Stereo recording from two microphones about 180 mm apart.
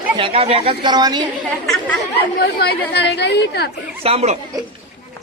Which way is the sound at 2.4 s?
60° left (ahead or behind).